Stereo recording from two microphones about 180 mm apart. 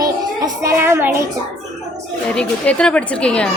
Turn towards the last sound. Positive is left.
turn(degrees=5)  # may be behind; listen again after turning